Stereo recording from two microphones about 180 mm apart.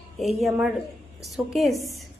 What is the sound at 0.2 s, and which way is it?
A woman's voice, centre (ahead or behind).